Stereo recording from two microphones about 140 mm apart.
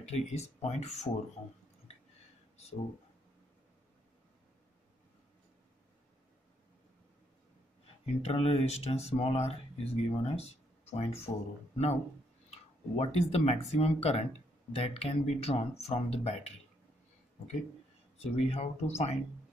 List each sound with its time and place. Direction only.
0.0 s speech: 50° left (ahead or behind)
8.3 s speech: 45° left (ahead or behind)
18.1 s speech: 50° left (ahead or behind)